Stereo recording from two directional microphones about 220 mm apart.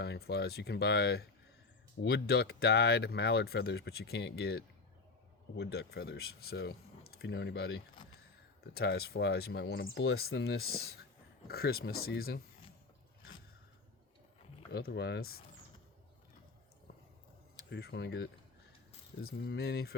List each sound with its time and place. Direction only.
0.0 s speech: 50° left (ahead or behind)
14.7 s speech: 45° left (ahead or behind)
17.7 s speech: 50° left (ahead or behind)
19.4 s speech: 50° left (ahead or behind)